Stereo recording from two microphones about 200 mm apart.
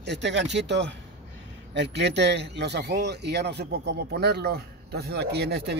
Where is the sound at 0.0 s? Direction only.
60° right (ahead or behind).